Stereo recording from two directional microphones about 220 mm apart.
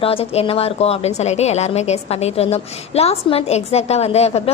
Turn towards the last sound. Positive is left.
turn(degrees=30)  # may be behind; listen again after turning